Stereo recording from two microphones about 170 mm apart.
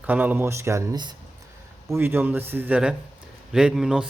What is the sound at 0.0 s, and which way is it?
A man's voice, 10° right (ahead or behind).